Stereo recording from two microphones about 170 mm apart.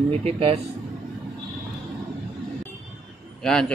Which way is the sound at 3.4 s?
5° left (ahead or behind).